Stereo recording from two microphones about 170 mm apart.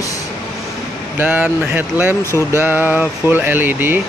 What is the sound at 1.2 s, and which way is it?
Speech, 10° right (ahead or behind).